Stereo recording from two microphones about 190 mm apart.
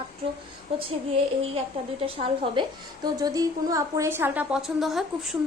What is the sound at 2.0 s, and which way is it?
A woman's voice, 30° right (ahead or behind).